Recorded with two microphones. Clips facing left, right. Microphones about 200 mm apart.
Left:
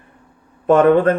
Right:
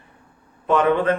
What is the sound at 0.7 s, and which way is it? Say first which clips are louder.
Mantra: left 7 dB; 45° left (ahead or behind).